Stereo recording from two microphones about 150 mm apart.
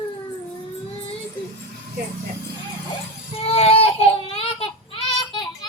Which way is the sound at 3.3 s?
40° left (ahead or behind).